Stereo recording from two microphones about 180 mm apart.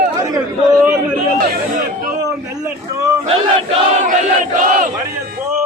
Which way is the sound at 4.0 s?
45° right (ahead or behind).